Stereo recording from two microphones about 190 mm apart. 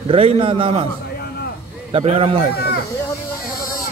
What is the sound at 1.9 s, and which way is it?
Speech, 30° right (ahead or behind).